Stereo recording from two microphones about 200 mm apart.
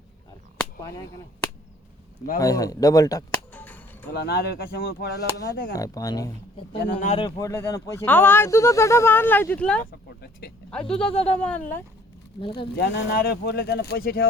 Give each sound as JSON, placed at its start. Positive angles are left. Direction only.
{"t": 0.6, "sound": "a sound", "side_deg": 15}
{"t": 2.4, "sound": "speech", "side_deg": 15}
{"t": 3.5, "sound": "chop", "side_deg": 10}
{"t": 4.1, "sound": "speech", "side_deg": 55}
{"t": 5.7, "sound": "speech", "side_deg": 15}
{"t": 6.8, "sound": "speech", "side_deg": 40}
{"t": 7.2, "sound": "speech", "side_deg": 20}
{"t": 10.2, "sound": "speech", "side_deg": 55}
{"t": 11.1, "sound": "speech", "side_deg": 30}
{"t": 11.3, "sound": "speech", "side_deg": 5}
{"t": 12.7, "sound": "speech", "side_deg": 60}